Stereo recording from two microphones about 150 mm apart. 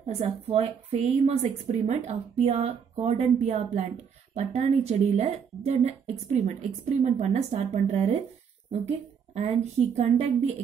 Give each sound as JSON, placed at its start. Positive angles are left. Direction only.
{"t": 0.0, "sound": "speech", "side_deg": -45}